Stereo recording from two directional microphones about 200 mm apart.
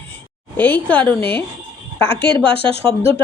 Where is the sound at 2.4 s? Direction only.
25° right (ahead or behind).